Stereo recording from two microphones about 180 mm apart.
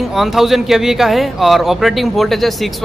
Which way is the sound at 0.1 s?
Centre (ahead or behind).